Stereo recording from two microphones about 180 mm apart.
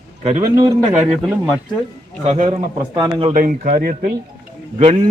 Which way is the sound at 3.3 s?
50° right (ahead or behind).